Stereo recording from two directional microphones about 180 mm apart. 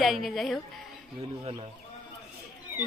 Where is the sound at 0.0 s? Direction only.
Centre (ahead or behind).